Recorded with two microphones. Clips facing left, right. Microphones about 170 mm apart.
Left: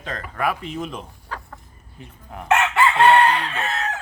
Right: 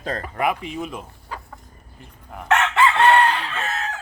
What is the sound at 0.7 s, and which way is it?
Chicken, 10° right (ahead or behind).